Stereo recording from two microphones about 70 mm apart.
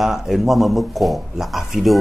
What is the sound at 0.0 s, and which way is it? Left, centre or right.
A man's voice, centre.